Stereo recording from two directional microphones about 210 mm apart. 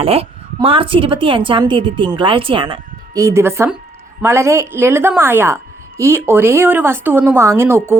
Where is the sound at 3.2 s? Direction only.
15° right (ahead or behind).